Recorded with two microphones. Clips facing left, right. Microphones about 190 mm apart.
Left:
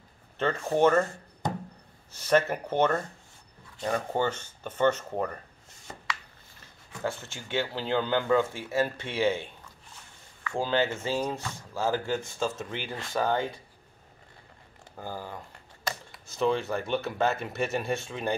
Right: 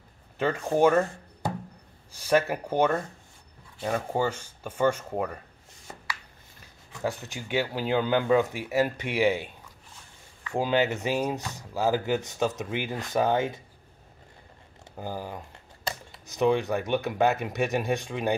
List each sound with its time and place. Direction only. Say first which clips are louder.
0.4 s speech: right 1 dB; 10° right (ahead or behind)
6.6 s speech: right 2 dB; 15° right (ahead or behind)
15.0 s speech: right 3 dB; 15° right (ahead or behind)